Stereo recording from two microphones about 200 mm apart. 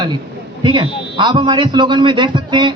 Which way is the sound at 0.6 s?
25° right (ahead or behind).